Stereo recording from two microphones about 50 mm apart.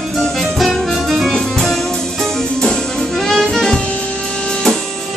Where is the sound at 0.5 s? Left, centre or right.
Centre.